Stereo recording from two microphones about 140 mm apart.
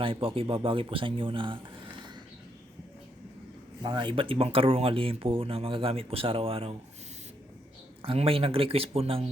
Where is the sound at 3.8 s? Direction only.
30° right (ahead or behind).